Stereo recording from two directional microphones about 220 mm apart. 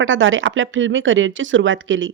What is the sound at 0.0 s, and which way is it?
Speech, 60° right (ahead or behind).